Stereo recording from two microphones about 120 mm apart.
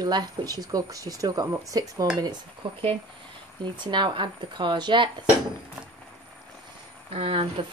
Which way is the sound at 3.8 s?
40° right (ahead or behind).